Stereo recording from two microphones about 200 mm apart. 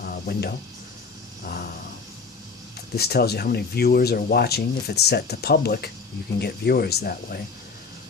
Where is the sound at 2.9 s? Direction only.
55° left (ahead or behind).